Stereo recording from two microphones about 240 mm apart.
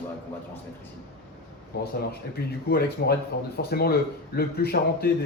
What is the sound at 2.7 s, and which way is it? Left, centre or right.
A man's voice, left.